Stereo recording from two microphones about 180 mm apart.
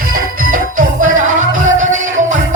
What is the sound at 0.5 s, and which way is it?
Music, 45° right (ahead or behind).